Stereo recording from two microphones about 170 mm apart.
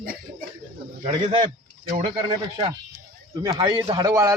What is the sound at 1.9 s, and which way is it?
Speech, 30° right (ahead or behind).